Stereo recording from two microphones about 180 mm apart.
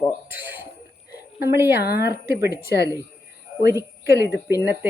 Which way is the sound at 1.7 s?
60° left (ahead or behind).